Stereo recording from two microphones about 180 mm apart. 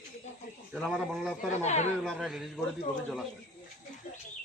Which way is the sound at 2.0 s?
Centre (ahead or behind).